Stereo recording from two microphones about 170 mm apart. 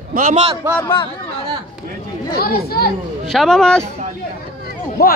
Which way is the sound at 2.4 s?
65° left (ahead or behind).